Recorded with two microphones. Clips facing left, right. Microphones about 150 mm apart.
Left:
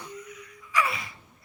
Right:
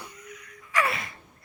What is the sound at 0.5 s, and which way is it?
Gasp, 60° right (ahead or behind).